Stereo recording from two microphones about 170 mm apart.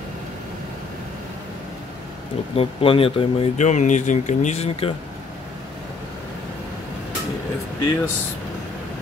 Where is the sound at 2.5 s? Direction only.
35° left (ahead or behind).